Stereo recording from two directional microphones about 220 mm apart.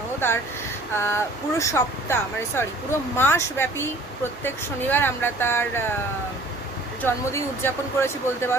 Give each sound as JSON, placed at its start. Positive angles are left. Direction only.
{"t": 0.9, "sound": "speech", "side_deg": 10}
{"t": 7.0, "sound": "speech", "side_deg": 10}